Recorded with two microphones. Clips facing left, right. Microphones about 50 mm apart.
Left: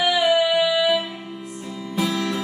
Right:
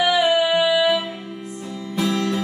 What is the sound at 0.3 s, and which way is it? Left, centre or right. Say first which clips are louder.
Music: right 1 dB; centre.